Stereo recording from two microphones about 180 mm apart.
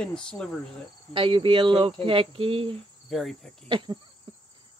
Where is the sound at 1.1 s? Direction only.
30° right (ahead or behind).